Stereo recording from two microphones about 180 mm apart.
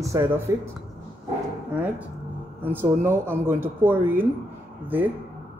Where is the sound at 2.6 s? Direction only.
10° right (ahead or behind).